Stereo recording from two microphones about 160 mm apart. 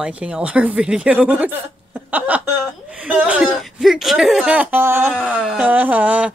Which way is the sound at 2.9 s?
10° right (ahead or behind).